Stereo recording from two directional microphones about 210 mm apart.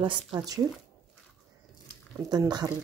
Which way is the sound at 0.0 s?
20° right (ahead or behind).